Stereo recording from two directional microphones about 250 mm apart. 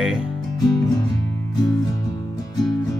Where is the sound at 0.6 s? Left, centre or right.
Centre.